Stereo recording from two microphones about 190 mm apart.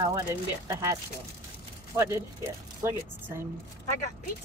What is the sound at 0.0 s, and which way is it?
Speech, 15° right (ahead or behind).